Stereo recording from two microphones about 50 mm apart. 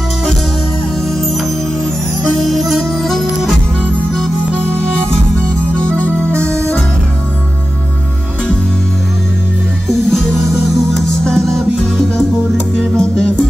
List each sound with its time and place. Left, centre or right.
2.4 s music: centre
5.8 s music: left
11.0 s music: centre
12.9 s music: centre